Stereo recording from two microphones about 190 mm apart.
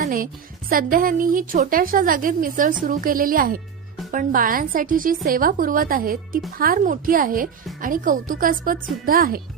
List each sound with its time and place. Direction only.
0.0 s a woman's voice: 45° right (ahead or behind)